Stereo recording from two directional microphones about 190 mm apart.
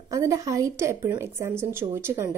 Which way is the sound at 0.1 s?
15° right (ahead or behind).